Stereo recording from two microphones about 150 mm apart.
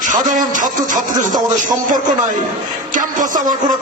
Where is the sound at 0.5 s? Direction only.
60° right (ahead or behind).